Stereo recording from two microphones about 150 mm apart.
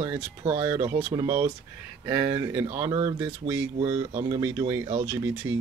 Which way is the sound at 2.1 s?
30° right (ahead or behind).